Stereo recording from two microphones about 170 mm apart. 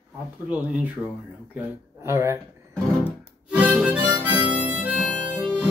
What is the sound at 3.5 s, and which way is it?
Harmonica, 5° right (ahead or behind).